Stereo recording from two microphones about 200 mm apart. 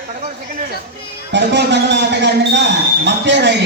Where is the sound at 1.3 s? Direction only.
60° right (ahead or behind).